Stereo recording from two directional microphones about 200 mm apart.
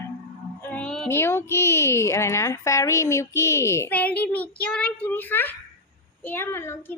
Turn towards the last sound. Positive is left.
turn(degrees=10)  # may be behind; listen again after turning